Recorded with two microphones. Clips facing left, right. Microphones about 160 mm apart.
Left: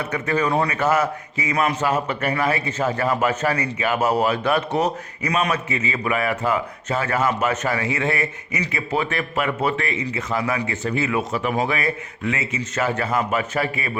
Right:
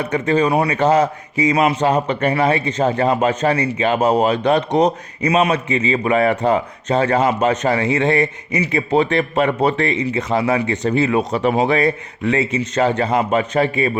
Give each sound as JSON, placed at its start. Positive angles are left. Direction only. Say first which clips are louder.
{"t": 0.1, "sound": "a man's voice", "louder": "right 6 dB", "side_deg": -25}